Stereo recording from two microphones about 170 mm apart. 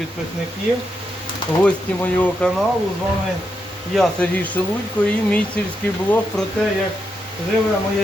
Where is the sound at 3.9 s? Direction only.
5° left (ahead or behind).